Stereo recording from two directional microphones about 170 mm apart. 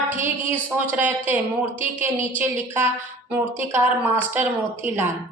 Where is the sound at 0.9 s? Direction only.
10° right (ahead or behind).